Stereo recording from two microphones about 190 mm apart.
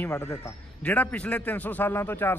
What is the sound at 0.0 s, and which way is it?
A man's voice, 15° left (ahead or behind).